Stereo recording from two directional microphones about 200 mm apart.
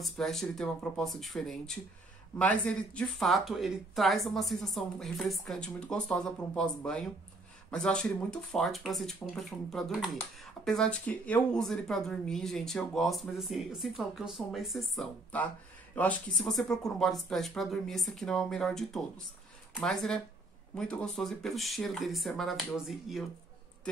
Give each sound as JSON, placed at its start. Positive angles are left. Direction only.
{"t": 0.0, "sound": "speech", "side_deg": 0}